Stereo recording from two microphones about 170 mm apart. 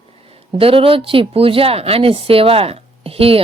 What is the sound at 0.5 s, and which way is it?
A woman's voice, 30° right (ahead or behind).